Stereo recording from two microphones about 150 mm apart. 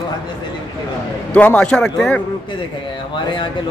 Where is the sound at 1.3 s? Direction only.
10° left (ahead or behind).